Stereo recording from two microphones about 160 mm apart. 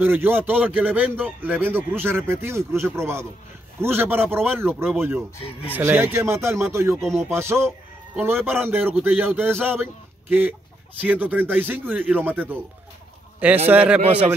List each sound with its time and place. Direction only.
0.0 s a man's voice: 15° right (ahead or behind)
7.0 s music: centre (ahead or behind)
7.2 s a man's voice: 15° right (ahead or behind)
11.0 s a man's voice: 10° right (ahead or behind)
13.7 s a man's voice: 10° right (ahead or behind)